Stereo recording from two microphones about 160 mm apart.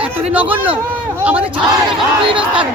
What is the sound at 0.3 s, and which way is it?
Speech, 10° right (ahead or behind).